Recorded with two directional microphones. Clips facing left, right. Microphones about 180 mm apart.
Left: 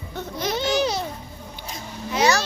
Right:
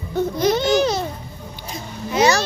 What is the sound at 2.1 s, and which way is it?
Vehicle, 15° right (ahead or behind).